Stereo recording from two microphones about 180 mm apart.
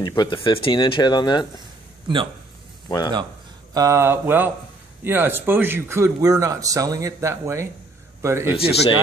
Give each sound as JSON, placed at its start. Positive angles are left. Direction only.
{"t": 0.0, "sound": "speech", "side_deg": 25}
{"t": 2.1, "sound": "speech", "side_deg": -25}
{"t": 3.7, "sound": "a man's voice", "side_deg": -15}
{"t": 8.5, "sound": "speech", "side_deg": 30}